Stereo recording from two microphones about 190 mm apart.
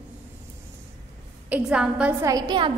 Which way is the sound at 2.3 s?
20° right (ahead or behind).